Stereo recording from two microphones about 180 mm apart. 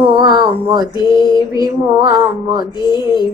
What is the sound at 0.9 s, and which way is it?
Speech, 25° left (ahead or behind).